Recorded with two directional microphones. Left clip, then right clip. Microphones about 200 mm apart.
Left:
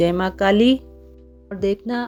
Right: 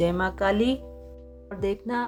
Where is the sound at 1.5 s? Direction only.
20° left (ahead or behind).